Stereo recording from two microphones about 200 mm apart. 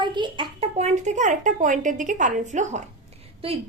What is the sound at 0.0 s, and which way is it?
A child's voice, 25° right (ahead or behind).